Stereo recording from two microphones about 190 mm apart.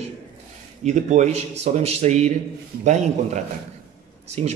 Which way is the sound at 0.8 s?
40° right (ahead or behind).